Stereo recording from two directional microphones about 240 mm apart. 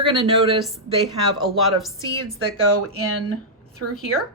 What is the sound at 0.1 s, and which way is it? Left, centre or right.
Speech, right.